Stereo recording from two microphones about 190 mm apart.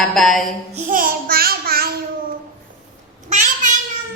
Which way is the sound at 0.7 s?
45° right (ahead or behind).